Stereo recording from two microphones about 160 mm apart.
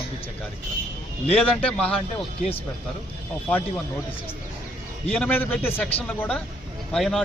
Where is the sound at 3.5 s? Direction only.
10° left (ahead or behind).